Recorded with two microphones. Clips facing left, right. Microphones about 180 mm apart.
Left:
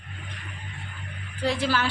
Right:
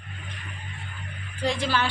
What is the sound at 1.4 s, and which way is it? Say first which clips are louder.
Speech: even; 5° left (ahead or behind).